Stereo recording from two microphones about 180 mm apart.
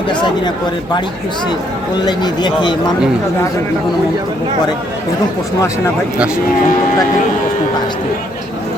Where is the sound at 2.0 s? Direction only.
25° left (ahead or behind).